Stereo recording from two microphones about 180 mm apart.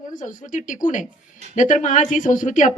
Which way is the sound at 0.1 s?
45° left (ahead or behind).